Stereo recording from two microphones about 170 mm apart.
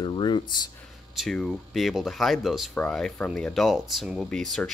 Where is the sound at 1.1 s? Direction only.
Centre (ahead or behind).